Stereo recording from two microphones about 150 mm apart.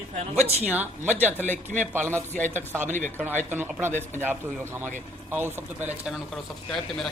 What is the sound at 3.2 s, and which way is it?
Speech, 15° right (ahead or behind).